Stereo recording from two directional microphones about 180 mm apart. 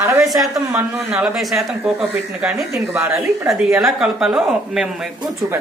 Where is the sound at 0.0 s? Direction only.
15° right (ahead or behind).